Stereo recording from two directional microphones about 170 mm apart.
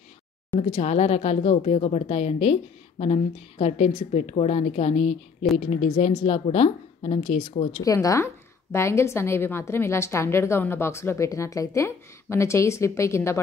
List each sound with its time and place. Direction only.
0.6 s speech: 40° left (ahead or behind)
7.8 s a woman's voice: 20° left (ahead or behind)